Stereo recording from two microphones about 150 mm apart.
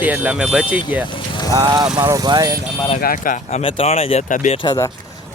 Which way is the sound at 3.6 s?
40° left (ahead or behind).